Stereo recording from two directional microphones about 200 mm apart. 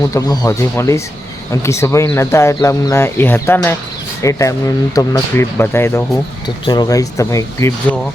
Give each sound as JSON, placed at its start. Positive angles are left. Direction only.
{"t": 0.0, "sound": "speech", "side_deg": 20}